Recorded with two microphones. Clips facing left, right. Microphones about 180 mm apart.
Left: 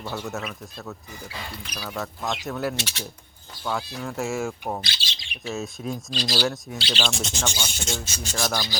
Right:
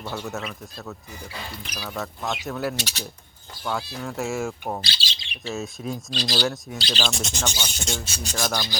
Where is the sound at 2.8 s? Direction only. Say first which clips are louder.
Even; 40° right (ahead or behind).